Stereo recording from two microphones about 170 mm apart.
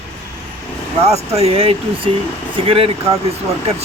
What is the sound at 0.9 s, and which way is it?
Speech, 40° right (ahead or behind).